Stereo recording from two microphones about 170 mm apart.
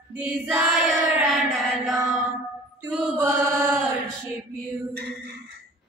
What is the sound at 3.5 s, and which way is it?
Chant, 15° right (ahead or behind).